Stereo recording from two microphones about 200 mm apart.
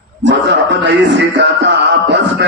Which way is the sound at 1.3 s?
60° right (ahead or behind).